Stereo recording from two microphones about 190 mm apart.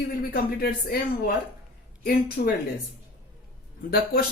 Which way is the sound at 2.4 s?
50° left (ahead or behind).